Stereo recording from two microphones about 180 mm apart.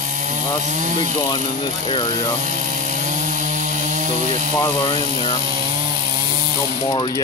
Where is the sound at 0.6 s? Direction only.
45° right (ahead or behind).